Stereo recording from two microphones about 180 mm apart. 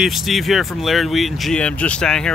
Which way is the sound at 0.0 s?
Centre (ahead or behind).